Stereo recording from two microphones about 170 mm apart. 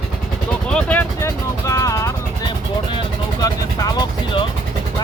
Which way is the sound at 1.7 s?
20° left (ahead or behind).